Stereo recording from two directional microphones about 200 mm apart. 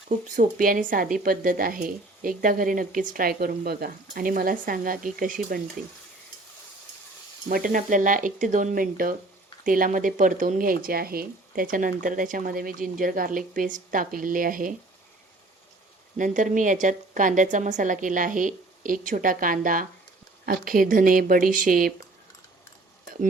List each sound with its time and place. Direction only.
0.1 s speech: 40° right (ahead or behind)
7.5 s a woman's voice: 45° right (ahead or behind)
16.1 s a woman's voice: 40° right (ahead or behind)